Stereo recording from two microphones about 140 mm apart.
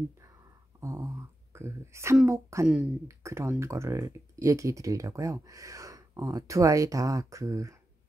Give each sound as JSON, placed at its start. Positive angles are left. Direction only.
{"t": 0.7, "sound": "speech", "side_deg": -20}